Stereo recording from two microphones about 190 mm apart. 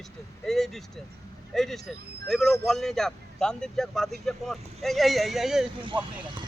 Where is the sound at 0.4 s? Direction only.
Centre (ahead or behind).